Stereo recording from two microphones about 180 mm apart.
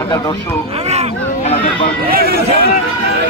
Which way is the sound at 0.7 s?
35° right (ahead or behind).